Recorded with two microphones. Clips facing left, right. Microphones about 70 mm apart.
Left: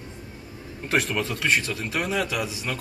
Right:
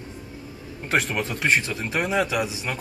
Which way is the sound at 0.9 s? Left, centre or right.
Centre.